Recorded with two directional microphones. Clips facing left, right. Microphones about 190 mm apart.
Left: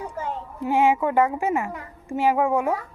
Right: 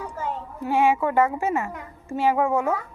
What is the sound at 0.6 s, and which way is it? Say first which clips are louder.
A woman's voice: left 1 dB; 15° left (ahead or behind).